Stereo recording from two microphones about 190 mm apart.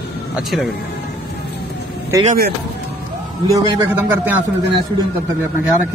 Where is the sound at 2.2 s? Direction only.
50° right (ahead or behind).